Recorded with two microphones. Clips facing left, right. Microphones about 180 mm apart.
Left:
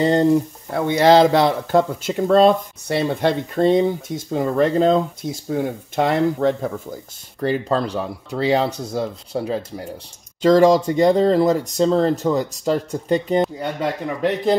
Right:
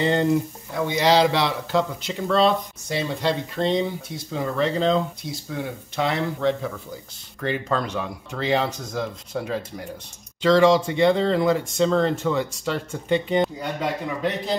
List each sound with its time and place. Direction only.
0.0 s speech: 40° left (ahead or behind)
0.7 s speech: 55° left (ahead or behind)
7.3 s speech: 35° left (ahead or behind)
10.4 s speech: 45° left (ahead or behind)